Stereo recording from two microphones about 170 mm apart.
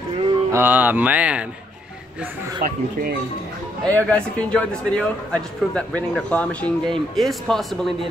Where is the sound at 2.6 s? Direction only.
60° right (ahead or behind).